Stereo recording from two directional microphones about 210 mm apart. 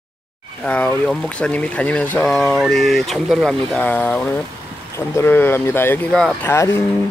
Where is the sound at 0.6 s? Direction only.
5° left (ahead or behind).